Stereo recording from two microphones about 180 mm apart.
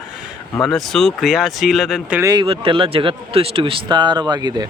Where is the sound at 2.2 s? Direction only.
25° right (ahead or behind).